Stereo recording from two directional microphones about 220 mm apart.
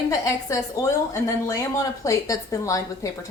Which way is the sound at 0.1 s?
15° left (ahead or behind).